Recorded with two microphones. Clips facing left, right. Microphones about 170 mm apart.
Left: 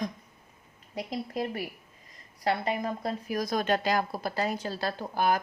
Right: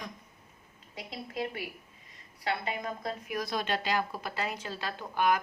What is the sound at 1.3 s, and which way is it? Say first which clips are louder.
Speech: right 1 dB; 40° left (ahead or behind).